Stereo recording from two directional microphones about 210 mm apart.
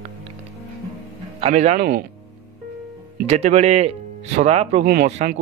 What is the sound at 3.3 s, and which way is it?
Speech, 30° right (ahead or behind).